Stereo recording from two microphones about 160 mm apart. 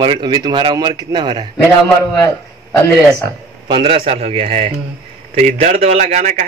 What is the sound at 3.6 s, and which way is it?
A man's voice, 35° right (ahead or behind).